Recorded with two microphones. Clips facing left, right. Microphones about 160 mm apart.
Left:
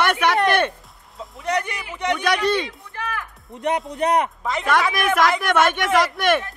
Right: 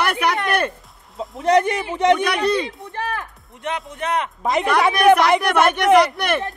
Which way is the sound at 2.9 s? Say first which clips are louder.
Right 3 dB; 30° right (ahead or behind).